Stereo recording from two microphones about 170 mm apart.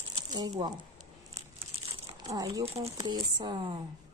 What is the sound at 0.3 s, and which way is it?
Speech, 25° right (ahead or behind).